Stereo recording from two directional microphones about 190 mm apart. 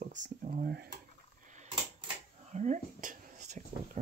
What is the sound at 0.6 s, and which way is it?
Speech, 55° right (ahead or behind).